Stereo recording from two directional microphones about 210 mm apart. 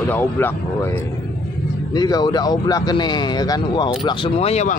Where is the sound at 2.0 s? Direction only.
20° left (ahead or behind).